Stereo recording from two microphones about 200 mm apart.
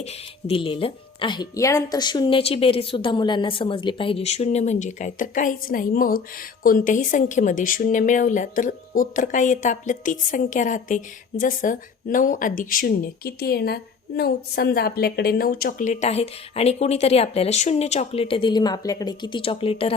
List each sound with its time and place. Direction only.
0.0 s speech: 30° left (ahead or behind)